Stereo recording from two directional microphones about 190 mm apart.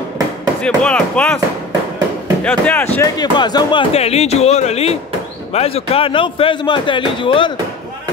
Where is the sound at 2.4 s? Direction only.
10° left (ahead or behind).